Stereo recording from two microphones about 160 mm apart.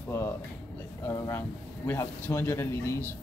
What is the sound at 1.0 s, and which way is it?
A man's voice, 15° left (ahead or behind).